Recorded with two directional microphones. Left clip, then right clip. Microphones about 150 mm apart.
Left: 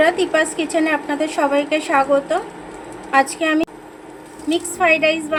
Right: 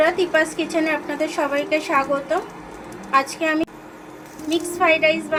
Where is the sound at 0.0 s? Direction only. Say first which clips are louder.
Left 2 dB; 35° left (ahead or behind).